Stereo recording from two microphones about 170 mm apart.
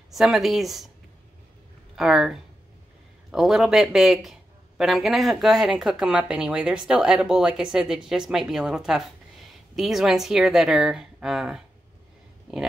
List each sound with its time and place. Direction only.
0.1 s speech: centre (ahead or behind)
2.0 s speech: centre (ahead or behind)